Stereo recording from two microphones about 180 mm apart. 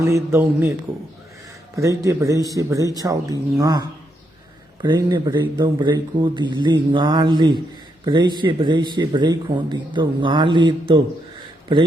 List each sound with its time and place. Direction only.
0.0 s speech: 15° right (ahead or behind)
1.7 s speech: 15° right (ahead or behind)